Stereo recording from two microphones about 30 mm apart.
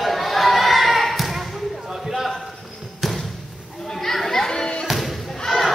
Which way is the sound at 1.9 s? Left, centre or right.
Centre.